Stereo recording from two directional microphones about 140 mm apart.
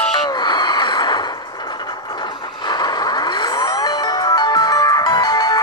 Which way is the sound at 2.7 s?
30° left (ahead or behind).